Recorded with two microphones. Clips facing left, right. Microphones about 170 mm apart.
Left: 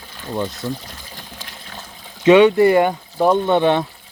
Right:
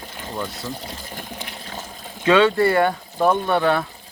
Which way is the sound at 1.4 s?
15° right (ahead or behind).